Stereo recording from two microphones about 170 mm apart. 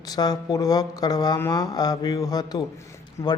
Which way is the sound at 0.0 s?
20° left (ahead or behind).